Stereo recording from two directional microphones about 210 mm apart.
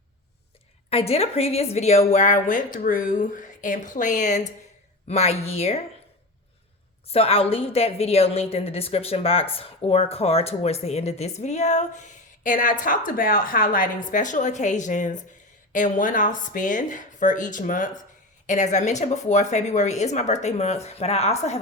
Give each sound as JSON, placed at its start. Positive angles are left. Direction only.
{"t": 0.9, "sound": "a woman's voice", "side_deg": 30}
{"t": 7.1, "sound": "a woman's voice", "side_deg": 30}